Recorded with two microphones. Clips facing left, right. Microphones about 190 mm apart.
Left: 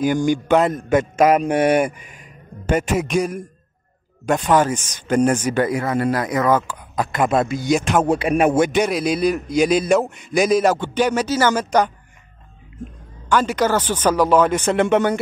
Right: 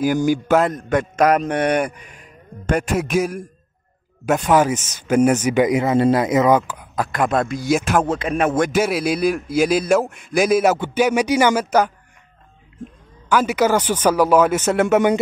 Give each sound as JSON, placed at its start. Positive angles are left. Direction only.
{"t": 0.0, "sound": "a man's voice", "side_deg": -5}
{"t": 6.7, "sound": "a man's voice", "side_deg": -5}
{"t": 8.1, "sound": "a man's voice", "side_deg": 10}
{"t": 8.6, "sound": "a man's voice", "side_deg": -5}
{"t": 13.3, "sound": "a man's voice", "side_deg": -10}